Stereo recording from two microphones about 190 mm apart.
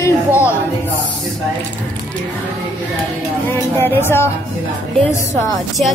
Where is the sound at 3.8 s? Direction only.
10° left (ahead or behind).